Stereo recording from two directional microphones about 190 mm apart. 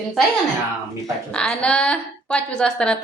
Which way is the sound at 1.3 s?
5° left (ahead or behind).